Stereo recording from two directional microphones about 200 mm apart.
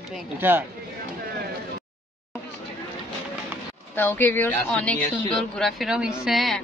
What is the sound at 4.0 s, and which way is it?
Speech, 10° left (ahead or behind).